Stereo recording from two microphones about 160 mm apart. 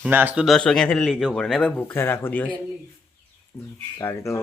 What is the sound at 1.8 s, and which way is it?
Speech, 15° left (ahead or behind).